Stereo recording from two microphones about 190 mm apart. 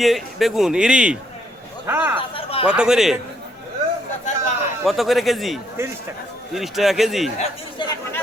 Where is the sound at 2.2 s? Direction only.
30° left (ahead or behind).